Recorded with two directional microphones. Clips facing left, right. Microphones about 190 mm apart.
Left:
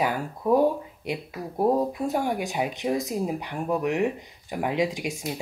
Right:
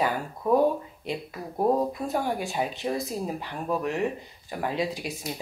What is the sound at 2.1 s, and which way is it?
Speech, 15° left (ahead or behind).